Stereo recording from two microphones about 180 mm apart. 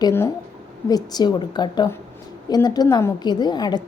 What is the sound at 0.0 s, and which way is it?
A woman's voice, 15° left (ahead or behind).